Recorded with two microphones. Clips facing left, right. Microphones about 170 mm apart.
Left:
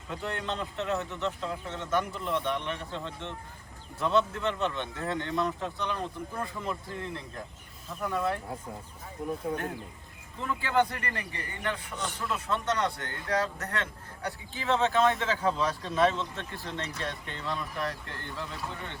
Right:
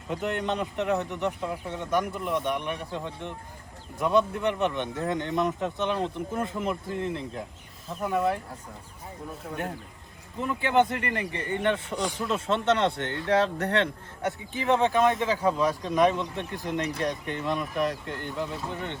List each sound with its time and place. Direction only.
0.1 s speech: 20° right (ahead or behind)
10.4 s speech: 20° right (ahead or behind)
11.9 s speech: 10° right (ahead or behind)
12.3 s speech: 25° right (ahead or behind)
14.2 s speech: 20° right (ahead or behind)